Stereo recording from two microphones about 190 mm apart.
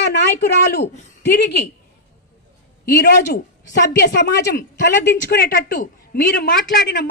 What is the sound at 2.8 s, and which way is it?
A woman's voice, 55° left (ahead or behind).